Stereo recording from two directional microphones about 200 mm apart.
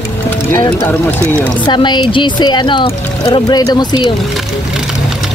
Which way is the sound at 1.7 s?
20° left (ahead or behind).